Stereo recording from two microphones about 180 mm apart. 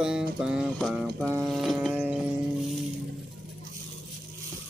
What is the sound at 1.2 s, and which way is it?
Speech, 15° right (ahead or behind).